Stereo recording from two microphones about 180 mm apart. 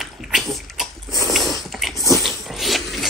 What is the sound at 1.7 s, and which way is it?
Dog, centre (ahead or behind).